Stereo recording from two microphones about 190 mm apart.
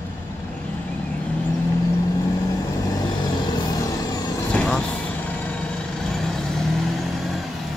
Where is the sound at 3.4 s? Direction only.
20° left (ahead or behind).